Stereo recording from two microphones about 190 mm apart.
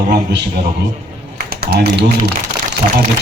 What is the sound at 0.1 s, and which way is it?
Speech, 55° right (ahead or behind).